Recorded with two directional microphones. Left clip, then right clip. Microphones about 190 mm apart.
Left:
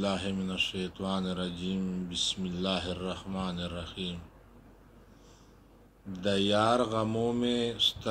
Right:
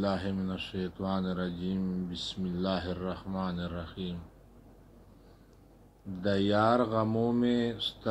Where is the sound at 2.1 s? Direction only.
25° right (ahead or behind).